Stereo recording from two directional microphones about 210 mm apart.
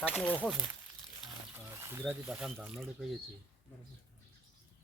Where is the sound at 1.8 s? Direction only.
10° right (ahead or behind).